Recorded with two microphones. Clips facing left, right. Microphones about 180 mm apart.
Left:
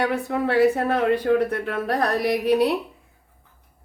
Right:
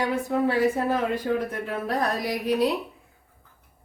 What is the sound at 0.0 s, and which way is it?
A woman's voice, 65° left (ahead or behind).